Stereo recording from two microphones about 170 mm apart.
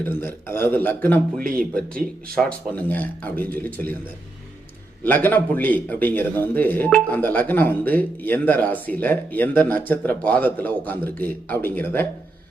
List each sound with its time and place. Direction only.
0.0 s a man's voice: 15° left (ahead or behind)
5.0 s a man's voice: 10° left (ahead or behind)